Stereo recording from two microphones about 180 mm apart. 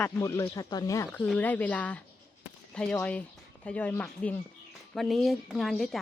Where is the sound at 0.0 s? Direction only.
15° left (ahead or behind).